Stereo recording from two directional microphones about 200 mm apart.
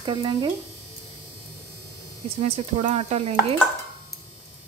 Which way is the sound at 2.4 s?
30° right (ahead or behind).